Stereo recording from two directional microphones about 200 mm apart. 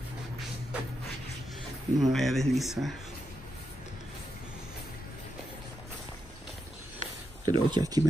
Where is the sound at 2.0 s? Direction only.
Centre (ahead or behind).